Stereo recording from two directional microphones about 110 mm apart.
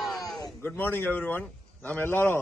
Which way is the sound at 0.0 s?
Centre (ahead or behind).